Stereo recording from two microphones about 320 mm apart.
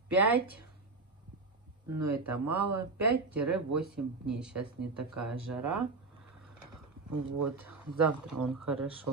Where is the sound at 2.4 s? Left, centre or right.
Right.